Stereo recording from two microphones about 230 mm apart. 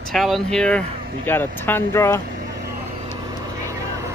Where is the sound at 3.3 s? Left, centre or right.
Centre.